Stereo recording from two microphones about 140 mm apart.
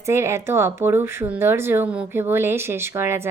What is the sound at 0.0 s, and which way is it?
A woman's voice, 20° right (ahead or behind).